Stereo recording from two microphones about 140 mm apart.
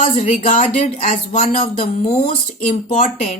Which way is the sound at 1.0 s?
65° left (ahead or behind).